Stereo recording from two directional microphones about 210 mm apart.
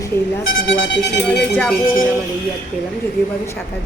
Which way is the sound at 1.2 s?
10° left (ahead or behind).